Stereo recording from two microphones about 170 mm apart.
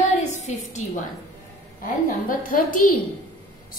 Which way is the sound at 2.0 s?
55° left (ahead or behind).